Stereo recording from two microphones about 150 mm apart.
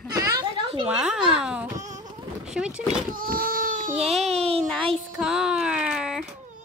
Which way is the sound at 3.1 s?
70° right (ahead or behind).